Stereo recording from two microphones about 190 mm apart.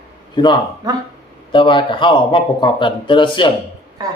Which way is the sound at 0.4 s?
25° left (ahead or behind).